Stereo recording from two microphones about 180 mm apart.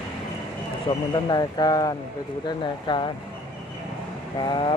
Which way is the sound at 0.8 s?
25° left (ahead or behind).